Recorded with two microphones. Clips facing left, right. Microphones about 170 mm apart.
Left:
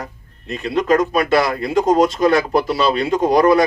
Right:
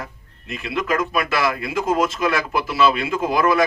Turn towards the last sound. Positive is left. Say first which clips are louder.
# left 6 dB
turn(degrees=40)  # may be behind; listen again after turning